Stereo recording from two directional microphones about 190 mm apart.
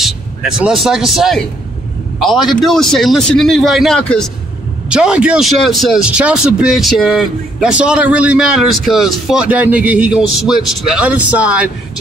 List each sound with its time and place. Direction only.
0.0 s speech: centre (ahead or behind)